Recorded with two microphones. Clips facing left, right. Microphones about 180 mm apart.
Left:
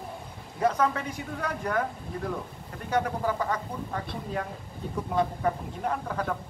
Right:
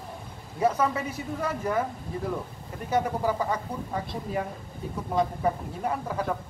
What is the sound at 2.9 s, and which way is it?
Speech, 10° right (ahead or behind).